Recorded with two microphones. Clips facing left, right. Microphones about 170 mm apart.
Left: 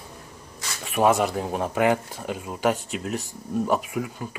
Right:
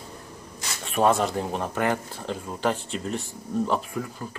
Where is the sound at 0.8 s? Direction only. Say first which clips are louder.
Left 1 dB; 10° left (ahead or behind).